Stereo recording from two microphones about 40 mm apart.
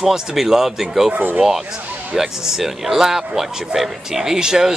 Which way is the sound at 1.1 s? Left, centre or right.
Right.